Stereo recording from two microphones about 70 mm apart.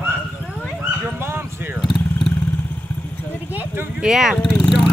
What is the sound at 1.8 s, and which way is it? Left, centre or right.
Vehicle, centre.